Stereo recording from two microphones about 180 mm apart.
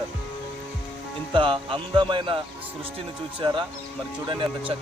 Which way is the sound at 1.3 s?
30° right (ahead or behind).